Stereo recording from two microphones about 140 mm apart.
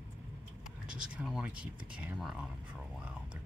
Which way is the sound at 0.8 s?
5° right (ahead or behind).